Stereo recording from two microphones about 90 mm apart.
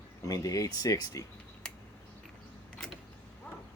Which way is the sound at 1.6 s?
5° left (ahead or behind).